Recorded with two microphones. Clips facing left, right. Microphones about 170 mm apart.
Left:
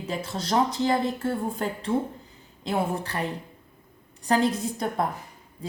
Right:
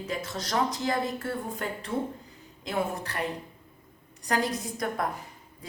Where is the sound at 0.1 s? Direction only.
30° left (ahead or behind).